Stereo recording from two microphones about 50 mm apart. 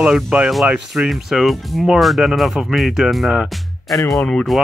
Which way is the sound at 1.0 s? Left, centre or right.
Centre.